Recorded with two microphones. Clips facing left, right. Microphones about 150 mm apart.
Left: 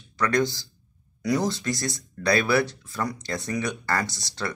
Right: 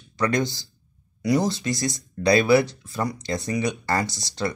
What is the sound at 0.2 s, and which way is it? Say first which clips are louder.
Speech: even; 15° right (ahead or behind).